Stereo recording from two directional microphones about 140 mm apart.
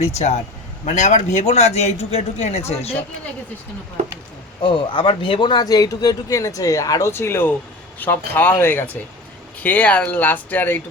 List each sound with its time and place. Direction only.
0.0 s a man's voice: 50° left (ahead or behind)
4.6 s speech: 35° left (ahead or behind); by 10.8 s 15° left (ahead or behind)